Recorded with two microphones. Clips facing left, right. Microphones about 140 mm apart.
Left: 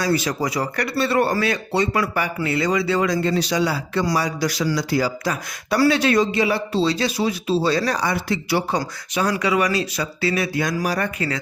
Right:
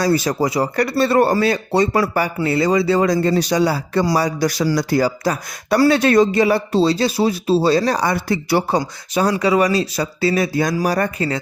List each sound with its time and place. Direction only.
0.0 s a man's voice: 35° right (ahead or behind)
0.9 s a man's voice: 40° right (ahead or behind)
8.0 s speech: 45° right (ahead or behind)
9.1 s a man's voice: 35° right (ahead or behind)